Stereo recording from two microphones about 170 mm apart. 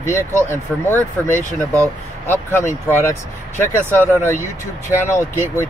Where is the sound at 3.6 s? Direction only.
15° left (ahead or behind).